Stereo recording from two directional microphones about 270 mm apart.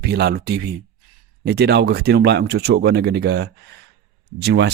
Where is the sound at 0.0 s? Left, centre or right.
Right.